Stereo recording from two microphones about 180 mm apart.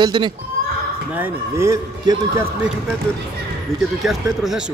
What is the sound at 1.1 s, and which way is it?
Speech, 15° right (ahead or behind).